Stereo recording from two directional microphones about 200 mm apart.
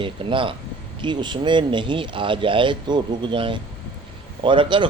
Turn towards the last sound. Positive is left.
turn(degrees=-25)  # may be behind; listen again after turning